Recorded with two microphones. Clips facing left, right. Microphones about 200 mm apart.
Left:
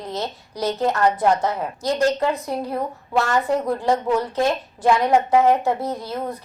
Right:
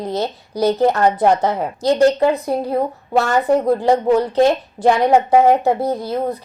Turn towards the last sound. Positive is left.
turn(degrees=-35)  # may be behind; listen again after turning